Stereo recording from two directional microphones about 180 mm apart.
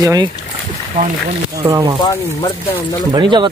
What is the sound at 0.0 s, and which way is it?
Speech, 20° right (ahead or behind).